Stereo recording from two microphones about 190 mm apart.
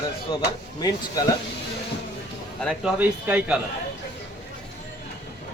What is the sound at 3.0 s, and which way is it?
Speech, 10° right (ahead or behind).